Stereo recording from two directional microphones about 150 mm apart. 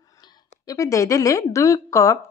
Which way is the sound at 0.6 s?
20° left (ahead or behind).